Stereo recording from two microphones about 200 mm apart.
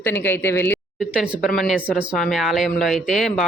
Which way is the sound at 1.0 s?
5° right (ahead or behind).